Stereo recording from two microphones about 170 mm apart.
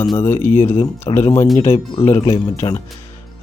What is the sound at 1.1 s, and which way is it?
Speech, 35° left (ahead or behind).